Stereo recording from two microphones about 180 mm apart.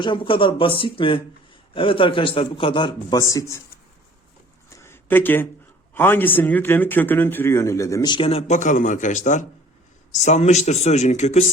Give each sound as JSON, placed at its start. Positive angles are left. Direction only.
{"t": 0.0, "sound": "a man's voice", "side_deg": 25}
{"t": 4.8, "sound": "a sound", "side_deg": 10}
{"t": 5.9, "sound": "speech", "side_deg": 10}